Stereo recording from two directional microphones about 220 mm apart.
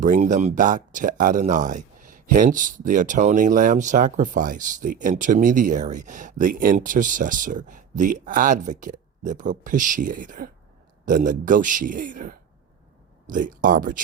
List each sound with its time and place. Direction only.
0.0 s speech: 35° right (ahead or behind)